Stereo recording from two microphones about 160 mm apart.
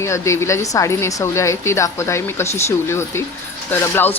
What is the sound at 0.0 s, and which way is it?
Speech, 15° left (ahead or behind).